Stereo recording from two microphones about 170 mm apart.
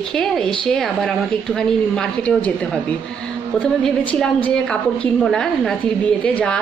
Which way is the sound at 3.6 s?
5° left (ahead or behind).